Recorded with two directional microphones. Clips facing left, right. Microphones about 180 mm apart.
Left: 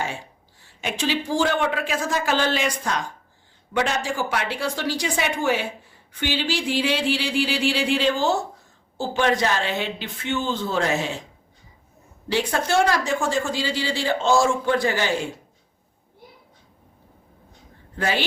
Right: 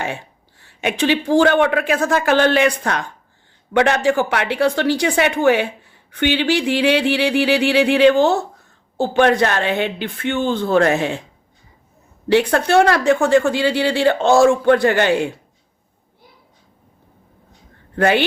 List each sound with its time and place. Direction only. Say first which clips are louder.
0.6 s a woman's voice: right 7 dB; 65° right (ahead or behind)
12.3 s a woman's voice: right 8 dB; 60° right (ahead or behind)
17.9 s speech: right 9 dB; 60° right (ahead or behind)